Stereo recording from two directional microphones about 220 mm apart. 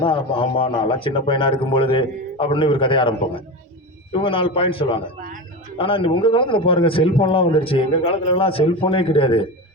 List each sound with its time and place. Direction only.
0.0 s a man's voice: 25° left (ahead or behind)